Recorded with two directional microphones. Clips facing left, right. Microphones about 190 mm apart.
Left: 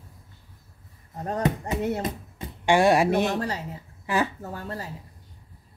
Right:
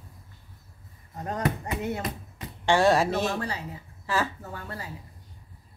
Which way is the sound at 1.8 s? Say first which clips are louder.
Left 5 dB; 30° left (ahead or behind).